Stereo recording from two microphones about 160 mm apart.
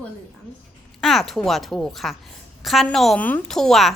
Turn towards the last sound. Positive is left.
turn(degrees=0)  # may be behind; listen again after turning